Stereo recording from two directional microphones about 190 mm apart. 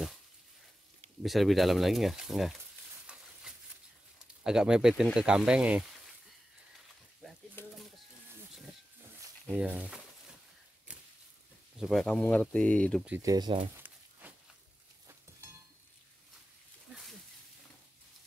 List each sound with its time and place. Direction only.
1.2 s speech: centre (ahead or behind)
3.5 s a sound: 5° right (ahead or behind)
4.4 s speech: 5° right (ahead or behind)
7.6 s bird: 10° left (ahead or behind)
9.5 s speech: 5° right (ahead or behind)
11.8 s speech: centre (ahead or behind)
13.2 s speech: 20° right (ahead or behind)
13.7 s a sound: 10° right (ahead or behind)